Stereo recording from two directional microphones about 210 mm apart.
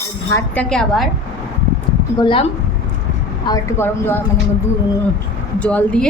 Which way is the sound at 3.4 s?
15° left (ahead or behind).